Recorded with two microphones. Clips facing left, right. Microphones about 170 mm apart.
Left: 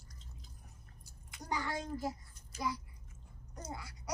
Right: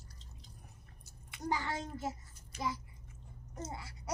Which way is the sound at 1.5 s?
25° right (ahead or behind).